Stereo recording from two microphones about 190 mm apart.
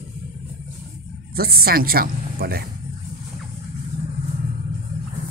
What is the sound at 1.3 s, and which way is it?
Speech, 55° right (ahead or behind).